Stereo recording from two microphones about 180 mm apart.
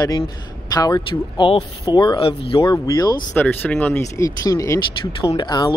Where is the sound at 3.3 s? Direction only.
10° left (ahead or behind).